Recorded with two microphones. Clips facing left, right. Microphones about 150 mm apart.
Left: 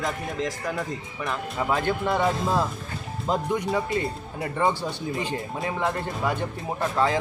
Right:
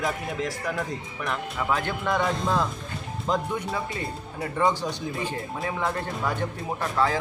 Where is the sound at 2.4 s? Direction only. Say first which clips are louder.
Left 1 dB; 5° left (ahead or behind).